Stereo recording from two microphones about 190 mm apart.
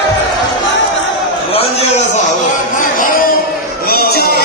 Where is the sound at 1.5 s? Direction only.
30° left (ahead or behind).